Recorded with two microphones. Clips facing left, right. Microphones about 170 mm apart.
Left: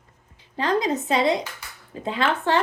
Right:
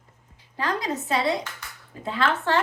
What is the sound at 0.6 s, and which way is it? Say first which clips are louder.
A woman's voice: left 5 dB; 20° left (ahead or behind).